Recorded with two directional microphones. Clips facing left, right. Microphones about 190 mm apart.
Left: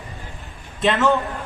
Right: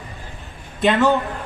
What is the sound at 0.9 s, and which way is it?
Speech, centre (ahead or behind).